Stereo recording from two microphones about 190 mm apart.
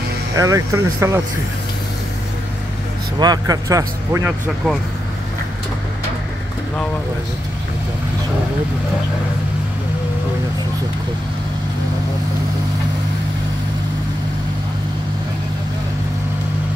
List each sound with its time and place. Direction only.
0.4 s speech: 15° right (ahead or behind)
3.2 s speech: 20° right (ahead or behind)